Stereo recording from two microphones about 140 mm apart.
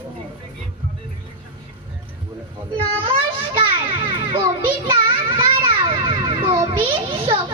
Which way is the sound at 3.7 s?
35° right (ahead or behind).